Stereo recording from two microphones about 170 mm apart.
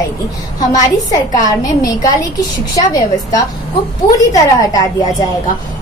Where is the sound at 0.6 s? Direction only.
20° left (ahead or behind).